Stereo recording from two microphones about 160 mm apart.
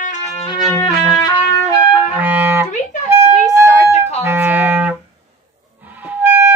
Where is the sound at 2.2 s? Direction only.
10° right (ahead or behind).